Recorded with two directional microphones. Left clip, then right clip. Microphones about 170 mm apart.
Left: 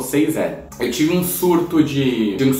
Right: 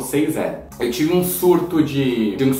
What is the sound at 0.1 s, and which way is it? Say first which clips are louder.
A man's voice: left 1 dB; centre (ahead or behind).